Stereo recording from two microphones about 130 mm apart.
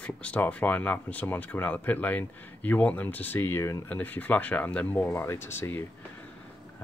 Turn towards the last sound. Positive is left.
turn(degrees=20)  # may be behind; listen again after turning